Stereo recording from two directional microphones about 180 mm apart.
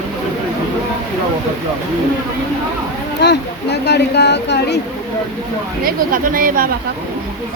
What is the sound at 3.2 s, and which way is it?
Speech, 70° left (ahead or behind).